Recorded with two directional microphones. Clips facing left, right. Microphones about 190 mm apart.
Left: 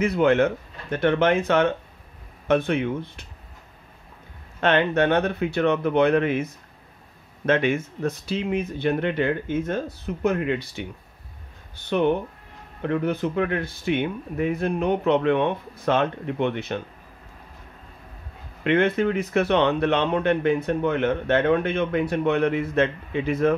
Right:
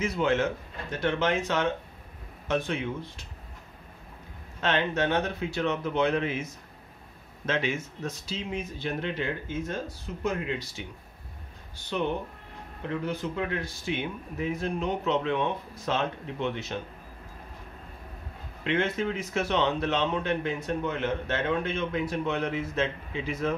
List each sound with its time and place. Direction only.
0.0 s a man's voice: 60° left (ahead or behind)
4.6 s a man's voice: 60° left (ahead or behind)
18.6 s a man's voice: 60° left (ahead or behind)